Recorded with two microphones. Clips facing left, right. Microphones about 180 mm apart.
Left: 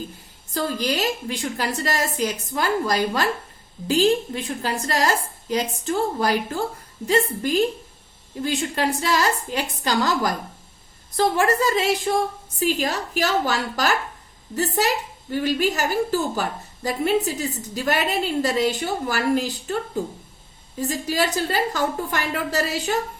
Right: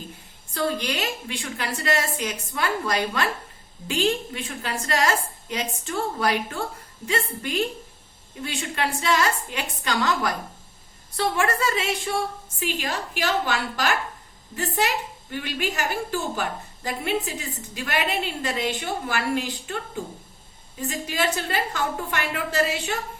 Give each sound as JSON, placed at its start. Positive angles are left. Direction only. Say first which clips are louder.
{"t": 0.5, "sound": "a woman's voice", "louder": "left 2 dB", "side_deg": 40}
{"t": 20.8, "sound": "a woman's voice", "louder": "left 3 dB", "side_deg": 35}